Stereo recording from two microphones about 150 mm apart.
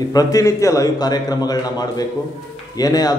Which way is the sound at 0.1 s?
25° left (ahead or behind).